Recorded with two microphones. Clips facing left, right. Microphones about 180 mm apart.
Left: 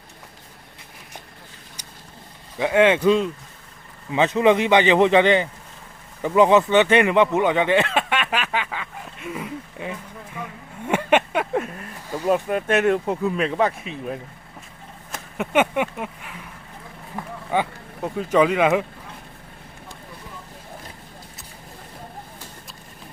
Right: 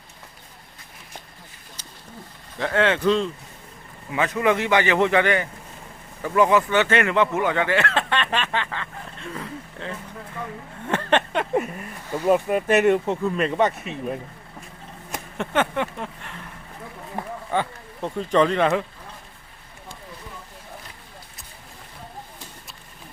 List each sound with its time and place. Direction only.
2.6 s speech: 15° left (ahead or behind)
4.1 s speech: 25° left (ahead or behind)
10.8 s a sound: 10° left (ahead or behind)
11.5 s speech: 5° right (ahead or behind)
15.4 s speech: 10° left (ahead or behind)
17.5 s speech: 10° left (ahead or behind)